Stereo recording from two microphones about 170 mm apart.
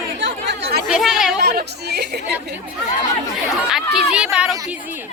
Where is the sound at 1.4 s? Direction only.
65° right (ahead or behind).